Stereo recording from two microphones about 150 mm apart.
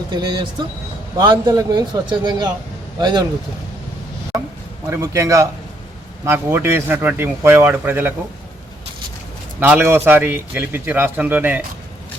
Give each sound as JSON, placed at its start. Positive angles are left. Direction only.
{"t": 0.1, "sound": "a man's voice", "side_deg": -30}
{"t": 4.9, "sound": "a man's voice", "side_deg": -20}
{"t": 9.6, "sound": "speech", "side_deg": -15}